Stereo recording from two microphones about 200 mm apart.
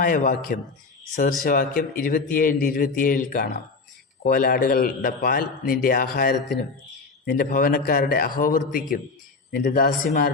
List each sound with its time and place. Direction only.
0.0 s a man's voice: 45° left (ahead or behind)